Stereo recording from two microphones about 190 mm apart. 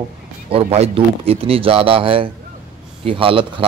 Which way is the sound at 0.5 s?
30° right (ahead or behind).